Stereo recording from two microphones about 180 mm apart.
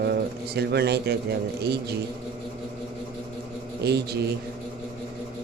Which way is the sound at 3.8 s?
65° right (ahead or behind).